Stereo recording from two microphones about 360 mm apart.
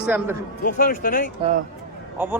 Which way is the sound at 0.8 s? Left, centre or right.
Left.